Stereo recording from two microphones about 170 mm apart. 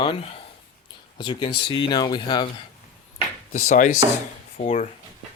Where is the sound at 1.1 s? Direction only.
30° left (ahead or behind).